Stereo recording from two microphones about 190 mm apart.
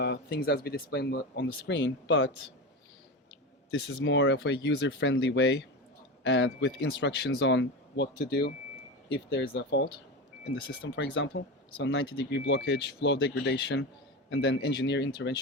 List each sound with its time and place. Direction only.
0.0 s speech: 60° left (ahead or behind)
3.8 s speech: 70° left (ahead or behind)